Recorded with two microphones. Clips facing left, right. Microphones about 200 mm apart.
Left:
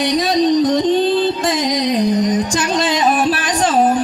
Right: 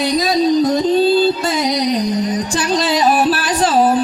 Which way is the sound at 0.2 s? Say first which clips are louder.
Even; 35° right (ahead or behind).